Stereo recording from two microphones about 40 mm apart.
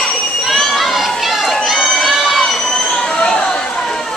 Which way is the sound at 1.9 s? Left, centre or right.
Centre.